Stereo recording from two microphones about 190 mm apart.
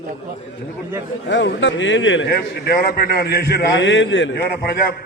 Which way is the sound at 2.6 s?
50° left (ahead or behind).